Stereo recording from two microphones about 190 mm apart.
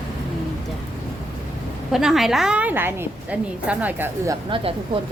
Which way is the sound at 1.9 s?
Centre (ahead or behind).